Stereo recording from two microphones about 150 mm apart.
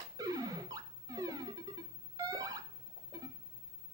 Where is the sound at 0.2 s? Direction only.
25° right (ahead or behind).